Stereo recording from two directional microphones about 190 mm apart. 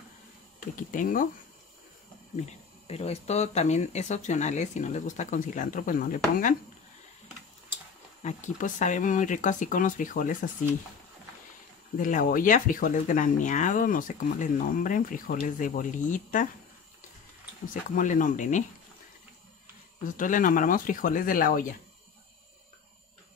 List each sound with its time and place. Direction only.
0.6 s speech: 45° left (ahead or behind)
2.3 s speech: 35° left (ahead or behind)
8.2 s speech: 40° left (ahead or behind)
12.0 s speech: 45° left (ahead or behind)
17.9 s speech: 45° left (ahead or behind)
20.1 s speech: 45° left (ahead or behind)